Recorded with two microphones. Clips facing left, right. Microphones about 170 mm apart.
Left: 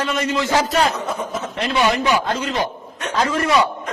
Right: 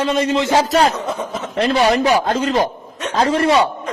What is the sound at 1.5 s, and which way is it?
A man's voice, 40° right (ahead or behind).